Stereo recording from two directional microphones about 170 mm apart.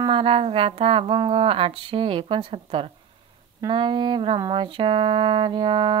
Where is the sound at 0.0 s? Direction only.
30° right (ahead or behind).